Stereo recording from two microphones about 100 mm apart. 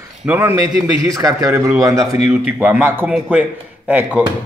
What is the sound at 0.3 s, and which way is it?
Speech, 20° right (ahead or behind).